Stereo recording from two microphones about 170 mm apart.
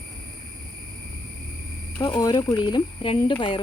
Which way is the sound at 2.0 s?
20° left (ahead or behind).